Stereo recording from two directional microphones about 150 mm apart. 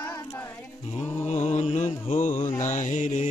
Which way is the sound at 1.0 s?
15° left (ahead or behind).